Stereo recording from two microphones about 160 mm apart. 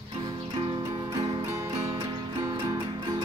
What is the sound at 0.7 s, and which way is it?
Music, 30° right (ahead or behind).